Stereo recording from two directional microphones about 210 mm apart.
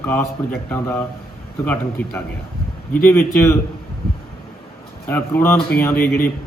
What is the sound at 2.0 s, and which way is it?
Speech, 10° left (ahead or behind).